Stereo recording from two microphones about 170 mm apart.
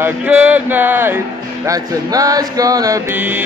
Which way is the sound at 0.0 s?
10° right (ahead or behind).